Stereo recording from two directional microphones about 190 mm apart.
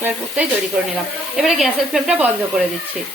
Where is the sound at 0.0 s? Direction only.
5° right (ahead or behind).